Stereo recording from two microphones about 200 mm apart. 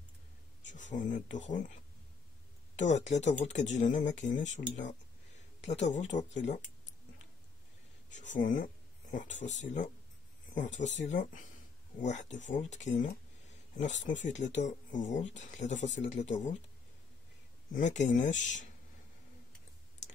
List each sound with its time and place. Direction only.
0.7 s speech: 40° left (ahead or behind)
2.9 s speech: 35° left (ahead or behind)
8.1 s speech: 35° left (ahead or behind)
17.7 s speech: 35° left (ahead or behind)